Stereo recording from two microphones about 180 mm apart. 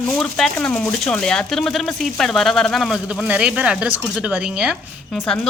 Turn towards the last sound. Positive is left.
turn(degrees=0)  # may be behind; listen again after turning